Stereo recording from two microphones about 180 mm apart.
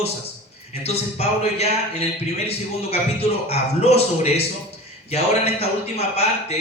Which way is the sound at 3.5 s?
35° left (ahead or behind).